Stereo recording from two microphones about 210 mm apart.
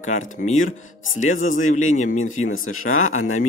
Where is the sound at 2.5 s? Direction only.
80° left.